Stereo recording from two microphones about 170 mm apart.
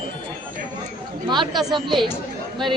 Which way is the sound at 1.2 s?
25° right (ahead or behind).